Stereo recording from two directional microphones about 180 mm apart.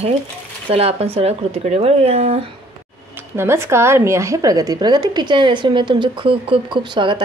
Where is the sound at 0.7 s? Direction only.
35° right (ahead or behind).